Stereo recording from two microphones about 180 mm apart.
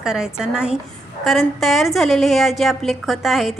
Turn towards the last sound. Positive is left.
turn(degrees=0)  # may be behind; listen again after turning